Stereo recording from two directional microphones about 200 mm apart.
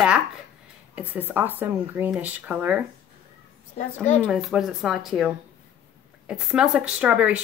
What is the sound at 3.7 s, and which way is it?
Speech, 35° left (ahead or behind).